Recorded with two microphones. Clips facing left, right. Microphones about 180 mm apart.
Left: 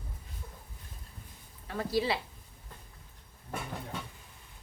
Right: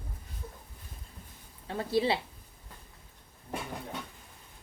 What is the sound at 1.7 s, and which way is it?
Speech, 25° right (ahead or behind).